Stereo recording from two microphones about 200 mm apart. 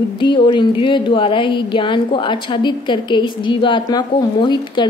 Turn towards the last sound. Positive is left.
turn(degrees=20)  # may be behind; listen again after turning